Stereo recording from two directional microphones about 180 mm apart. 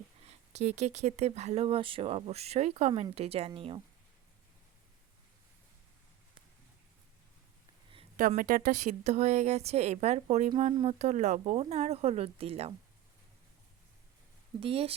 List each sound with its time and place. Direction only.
0.3 s speech: 40° right (ahead or behind)
8.1 s speech: 45° right (ahead or behind)
14.6 s speech: 30° right (ahead or behind)